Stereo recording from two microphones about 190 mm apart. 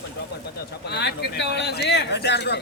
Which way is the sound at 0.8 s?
60° left (ahead or behind).